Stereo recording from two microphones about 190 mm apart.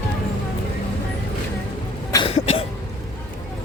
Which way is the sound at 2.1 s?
20° left (ahead or behind).